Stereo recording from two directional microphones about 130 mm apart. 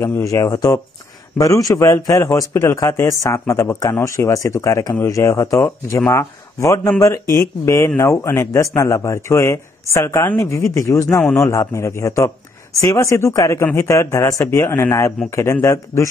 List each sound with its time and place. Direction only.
0.0 s speech: 20° left (ahead or behind)